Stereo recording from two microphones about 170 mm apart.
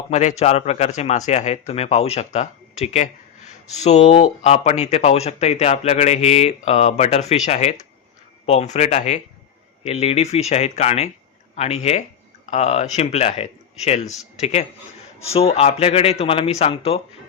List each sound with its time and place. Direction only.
0.1 s speech: 45° left (ahead or behind)